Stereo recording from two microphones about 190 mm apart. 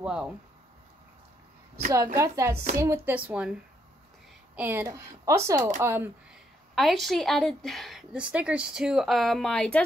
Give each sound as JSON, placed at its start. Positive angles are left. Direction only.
{"t": 0.0, "sound": "speech", "side_deg": -5}
{"t": 1.9, "sound": "speech", "side_deg": -15}
{"t": 4.6, "sound": "speech", "side_deg": -10}
{"t": 6.7, "sound": "a woman's voice", "side_deg": 0}